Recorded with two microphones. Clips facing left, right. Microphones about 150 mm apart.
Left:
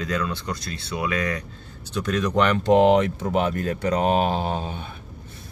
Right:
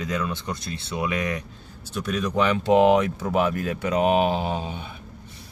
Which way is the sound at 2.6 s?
5° right (ahead or behind).